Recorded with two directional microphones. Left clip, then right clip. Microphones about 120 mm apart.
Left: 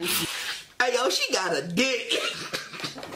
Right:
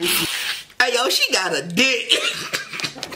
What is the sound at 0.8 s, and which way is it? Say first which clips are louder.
Speech: right 6 dB; 15° right (ahead or behind).